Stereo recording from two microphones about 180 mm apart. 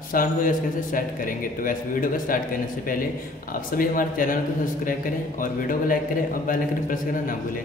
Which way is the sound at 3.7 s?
50° left (ahead or behind).